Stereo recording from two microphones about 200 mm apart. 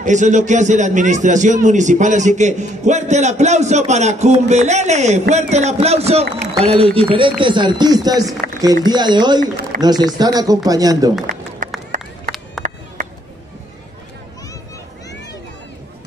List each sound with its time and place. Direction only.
0.0 s a man's voice: 35° right (ahead or behind); by 9.4 s 20° right (ahead or behind)
9.4 s a man's voice: 45° right (ahead or behind)
9.8 s speech: 20° right (ahead or behind)
11.6 s run: 40° right (ahead or behind)
13.0 s a sound: 35° right (ahead or behind)